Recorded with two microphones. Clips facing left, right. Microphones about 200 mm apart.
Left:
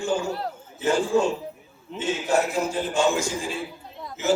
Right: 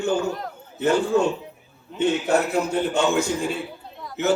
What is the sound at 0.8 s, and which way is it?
A man's voice, 60° right (ahead or behind).